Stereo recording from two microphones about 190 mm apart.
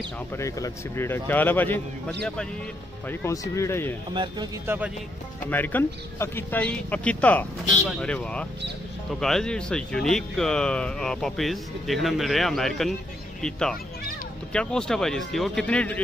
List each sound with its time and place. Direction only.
0.4 s speech: 15° left (ahead or behind)
4.1 s speech: 25° right (ahead or behind)
4.6 s speech: 10° right (ahead or behind)
5.5 s speech: 10° left (ahead or behind)